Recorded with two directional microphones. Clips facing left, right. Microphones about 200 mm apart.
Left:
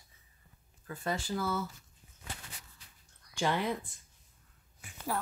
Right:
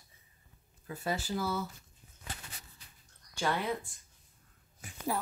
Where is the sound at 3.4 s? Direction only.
10° left (ahead or behind).